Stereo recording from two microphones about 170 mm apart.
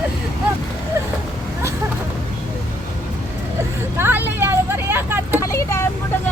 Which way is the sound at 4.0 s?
10° right (ahead or behind).